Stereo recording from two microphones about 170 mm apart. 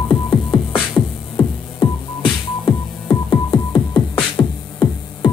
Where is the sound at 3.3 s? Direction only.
25° left (ahead or behind).